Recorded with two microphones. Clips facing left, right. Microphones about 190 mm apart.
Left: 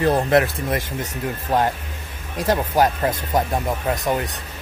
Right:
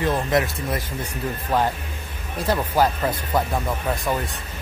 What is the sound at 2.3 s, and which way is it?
Speech, 10° left (ahead or behind).